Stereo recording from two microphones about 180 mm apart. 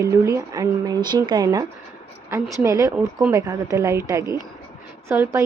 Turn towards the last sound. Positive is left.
turn(degrees=-15)  # may be behind; listen again after turning